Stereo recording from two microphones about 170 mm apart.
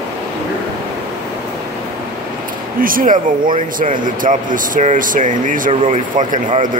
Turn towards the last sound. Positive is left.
turn(degrees=-50)  # may be behind; listen again after turning